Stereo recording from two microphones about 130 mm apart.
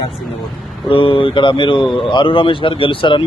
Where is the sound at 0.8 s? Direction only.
45° left (ahead or behind).